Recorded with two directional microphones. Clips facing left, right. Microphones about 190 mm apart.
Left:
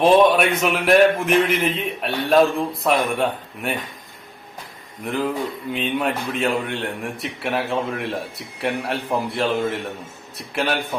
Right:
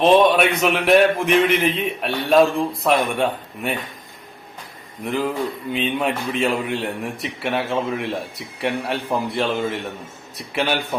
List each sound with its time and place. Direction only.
0.3 s a man's voice: centre (ahead or behind)
5.0 s a man's voice: centre (ahead or behind)